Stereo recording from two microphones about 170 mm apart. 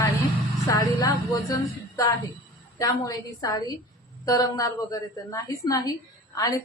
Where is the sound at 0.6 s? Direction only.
20° left (ahead or behind).